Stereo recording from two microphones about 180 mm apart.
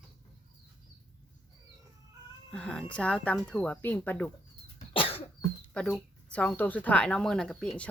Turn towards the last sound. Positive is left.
turn(degrees=5)  # may be behind; listen again after turning